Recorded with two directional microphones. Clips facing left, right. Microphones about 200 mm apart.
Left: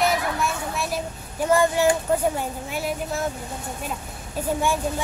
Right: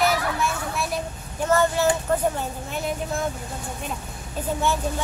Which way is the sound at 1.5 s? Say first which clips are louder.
Left 1 dB; 10° left (ahead or behind).